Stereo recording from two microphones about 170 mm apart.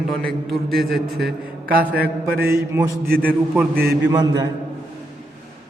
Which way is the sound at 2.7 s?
15° right (ahead or behind).